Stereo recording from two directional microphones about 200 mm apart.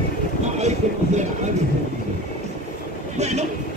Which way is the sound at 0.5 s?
35° right (ahead or behind).